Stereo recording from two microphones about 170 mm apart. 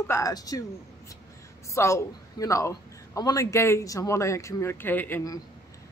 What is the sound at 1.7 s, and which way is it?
A man's voice, 15° left (ahead or behind).